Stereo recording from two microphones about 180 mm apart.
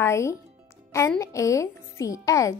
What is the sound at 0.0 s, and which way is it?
A woman's voice, 15° left (ahead or behind).